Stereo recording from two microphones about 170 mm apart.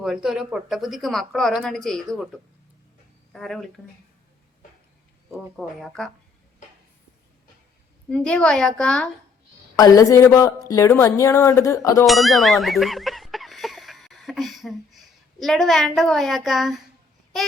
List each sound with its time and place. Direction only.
0.0 s speech: 5° right (ahead or behind)
3.3 s speech: centre (ahead or behind)
5.5 s speech: centre (ahead or behind)
8.1 s speech: 5° left (ahead or behind)
9.7 s a woman's voice: 20° left (ahead or behind)
12.0 s ding: centre (ahead or behind)